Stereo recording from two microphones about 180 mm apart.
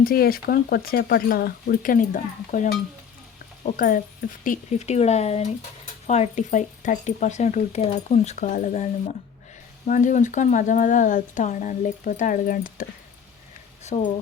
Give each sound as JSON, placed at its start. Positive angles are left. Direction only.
{"t": 0.0, "sound": "speech", "side_deg": 55}
{"t": 13.8, "sound": "speech", "side_deg": 40}